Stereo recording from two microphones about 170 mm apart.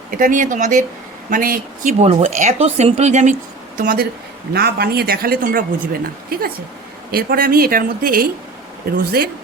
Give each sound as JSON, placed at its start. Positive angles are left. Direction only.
{"t": 0.2, "sound": "a woman's voice", "side_deg": -50}
{"t": 3.8, "sound": "speech", "side_deg": -60}